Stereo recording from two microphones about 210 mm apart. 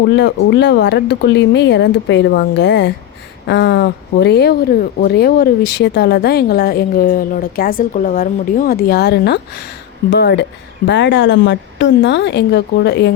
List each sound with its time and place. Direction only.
0.1 s speech: 55° left (ahead or behind)